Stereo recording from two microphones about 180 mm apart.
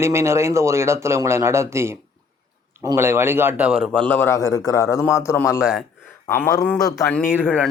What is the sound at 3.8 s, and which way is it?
A man's voice, 10° left (ahead or behind).